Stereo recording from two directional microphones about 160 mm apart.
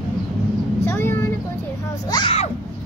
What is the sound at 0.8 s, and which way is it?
Vehicle, 15° left (ahead or behind).